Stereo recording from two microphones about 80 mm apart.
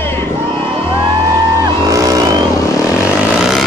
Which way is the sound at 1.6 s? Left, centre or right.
Right.